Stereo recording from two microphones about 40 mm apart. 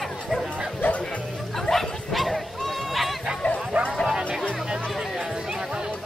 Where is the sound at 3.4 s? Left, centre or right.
Left.